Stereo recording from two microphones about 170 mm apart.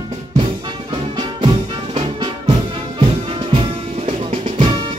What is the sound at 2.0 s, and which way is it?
Music, 30° right (ahead or behind).